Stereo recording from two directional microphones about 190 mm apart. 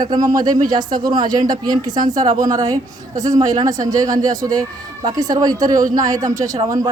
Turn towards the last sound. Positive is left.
turn(degrees=-20)  # may be behind; listen again after turning